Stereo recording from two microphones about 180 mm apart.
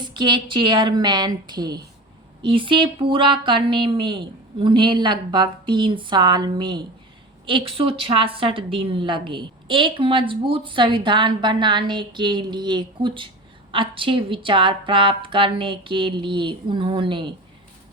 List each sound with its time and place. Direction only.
0.0 s a woman's voice: 25° right (ahead or behind)